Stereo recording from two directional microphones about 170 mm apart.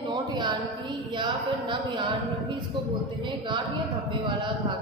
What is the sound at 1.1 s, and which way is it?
Speech, 25° right (ahead or behind).